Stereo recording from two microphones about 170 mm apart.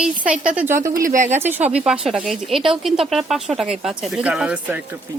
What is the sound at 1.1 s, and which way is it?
Speech, 45° right (ahead or behind).